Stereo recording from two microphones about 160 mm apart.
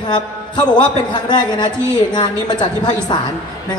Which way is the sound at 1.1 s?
30° left (ahead or behind).